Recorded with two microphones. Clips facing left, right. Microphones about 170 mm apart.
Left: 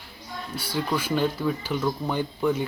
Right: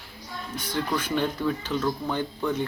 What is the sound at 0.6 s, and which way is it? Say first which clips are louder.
Speech: left 1 dB; 10° left (ahead or behind).